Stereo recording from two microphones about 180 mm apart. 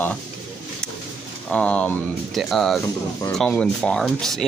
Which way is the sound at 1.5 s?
5° left (ahead or behind).